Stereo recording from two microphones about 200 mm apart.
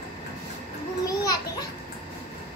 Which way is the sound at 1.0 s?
20° left (ahead or behind).